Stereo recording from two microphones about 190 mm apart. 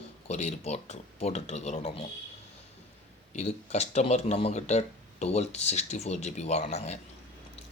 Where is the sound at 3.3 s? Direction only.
35° left (ahead or behind).